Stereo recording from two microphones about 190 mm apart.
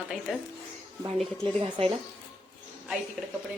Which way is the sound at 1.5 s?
25° right (ahead or behind).